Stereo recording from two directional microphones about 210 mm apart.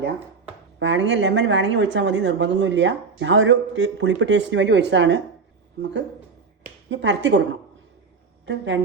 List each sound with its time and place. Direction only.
0.8 s speech: 60° right (ahead or behind)
6.9 s speech: 60° right (ahead or behind)
8.4 s speech: 60° right (ahead or behind)